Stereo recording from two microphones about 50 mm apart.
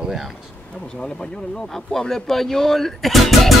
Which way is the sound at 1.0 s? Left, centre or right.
Centre.